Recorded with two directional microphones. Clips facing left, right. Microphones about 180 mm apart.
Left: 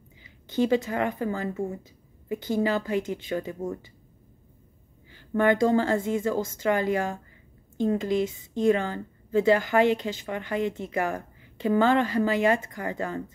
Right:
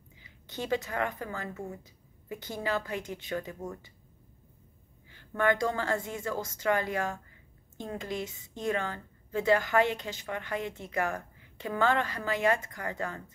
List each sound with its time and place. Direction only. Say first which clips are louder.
0.7 s a woman's voice: left 3 dB; 25° left (ahead or behind)
5.3 s a woman's voice: left 7 dB; 25° left (ahead or behind)